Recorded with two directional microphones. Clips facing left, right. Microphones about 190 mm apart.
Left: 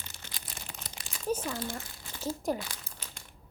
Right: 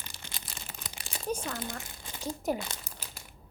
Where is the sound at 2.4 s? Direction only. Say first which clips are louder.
Right 2 dB; 15° right (ahead or behind).